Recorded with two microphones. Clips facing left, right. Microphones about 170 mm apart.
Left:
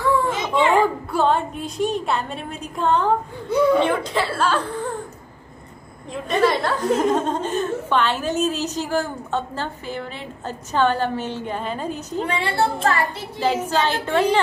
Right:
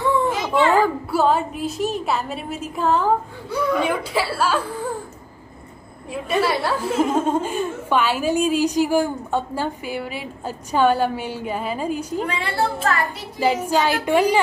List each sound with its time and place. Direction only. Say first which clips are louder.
0.4 s a sound: right 1 dB; 20° left (ahead or behind)
1.1 s a woman's voice: right 2 dB; 5° right (ahead or behind)
3.4 s speech: left 5 dB; 25° left (ahead or behind)
3.8 s a woman's voice: left 1 dB; 10° right (ahead or behind)
6.2 s a woman's voice: left 2 dB; 10° right (ahead or behind)
12.3 s speech: left 6 dB; 30° left (ahead or behind)
13.4 s a woman's voice: right 2 dB; 10° right (ahead or behind)